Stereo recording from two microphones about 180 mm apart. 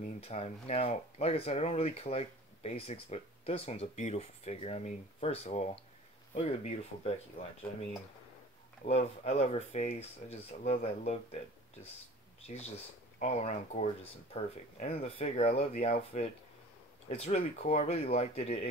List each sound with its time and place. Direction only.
0.2 s speech: 35° left (ahead or behind)
8.8 s speech: 35° left (ahead or behind)